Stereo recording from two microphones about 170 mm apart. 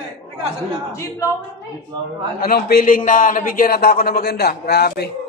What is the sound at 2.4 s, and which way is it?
A man's voice, 60° left (ahead or behind).